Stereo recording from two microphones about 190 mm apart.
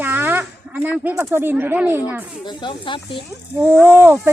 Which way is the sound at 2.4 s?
25° left (ahead or behind).